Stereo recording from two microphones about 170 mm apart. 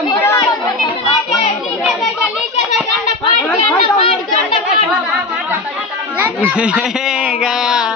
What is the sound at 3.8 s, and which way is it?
Chatter, 30° left (ahead or behind).